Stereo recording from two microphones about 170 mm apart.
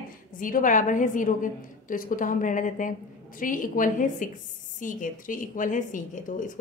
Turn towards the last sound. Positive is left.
turn(degrees=50)  # may be behind; listen again after turning